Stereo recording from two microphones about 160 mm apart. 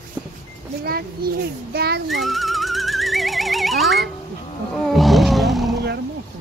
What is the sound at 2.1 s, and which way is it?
Music, centre (ahead or behind).